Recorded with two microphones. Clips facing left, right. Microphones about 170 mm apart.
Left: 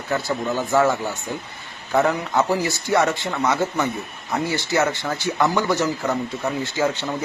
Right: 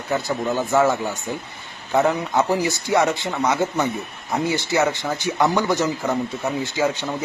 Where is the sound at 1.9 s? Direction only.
20° right (ahead or behind).